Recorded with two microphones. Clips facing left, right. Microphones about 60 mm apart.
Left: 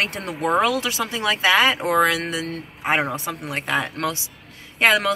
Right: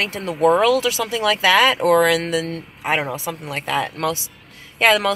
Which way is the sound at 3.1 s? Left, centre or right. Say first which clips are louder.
Right 1 dB; left.